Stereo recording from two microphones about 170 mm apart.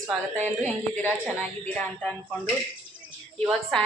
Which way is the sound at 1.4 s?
10° left (ahead or behind).